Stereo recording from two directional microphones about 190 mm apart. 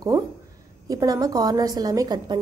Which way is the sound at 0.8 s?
20° right (ahead or behind).